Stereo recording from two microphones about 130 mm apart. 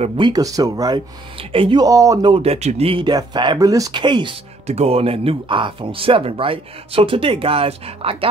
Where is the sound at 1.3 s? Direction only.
40° right (ahead or behind).